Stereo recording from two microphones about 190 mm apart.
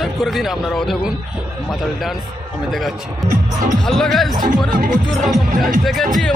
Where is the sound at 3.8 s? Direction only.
5° left (ahead or behind).